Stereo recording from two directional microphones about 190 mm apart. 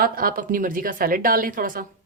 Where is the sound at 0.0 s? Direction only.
50° right (ahead or behind).